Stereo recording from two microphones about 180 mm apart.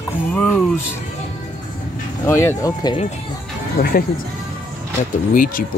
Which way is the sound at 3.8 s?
55° left (ahead or behind).